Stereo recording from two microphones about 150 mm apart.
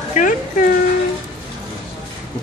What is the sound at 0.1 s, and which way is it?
Speech, 60° left (ahead or behind).